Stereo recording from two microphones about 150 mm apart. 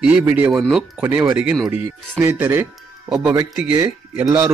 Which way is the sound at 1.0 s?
15° right (ahead or behind).